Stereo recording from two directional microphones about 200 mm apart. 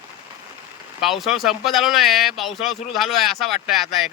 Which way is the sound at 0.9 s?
Centre (ahead or behind).